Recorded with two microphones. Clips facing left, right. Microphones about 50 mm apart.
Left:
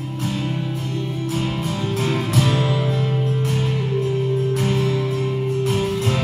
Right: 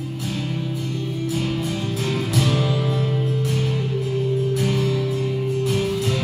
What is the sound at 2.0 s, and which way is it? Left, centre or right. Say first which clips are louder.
Music: left 1 dB; left.